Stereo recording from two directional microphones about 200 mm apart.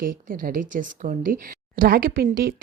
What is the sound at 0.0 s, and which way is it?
Speech, 45° right (ahead or behind).